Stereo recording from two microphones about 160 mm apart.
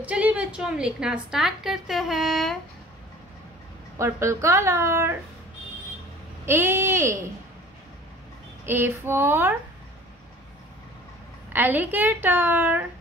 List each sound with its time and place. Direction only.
0.0 s a woman's voice: 10° right (ahead or behind)
4.0 s a woman's voice: 20° right (ahead or behind)
6.4 s a woman's voice: 15° right (ahead or behind)
8.6 s a woman's voice: 15° right (ahead or behind)
11.5 s a woman's voice: 10° right (ahead or behind)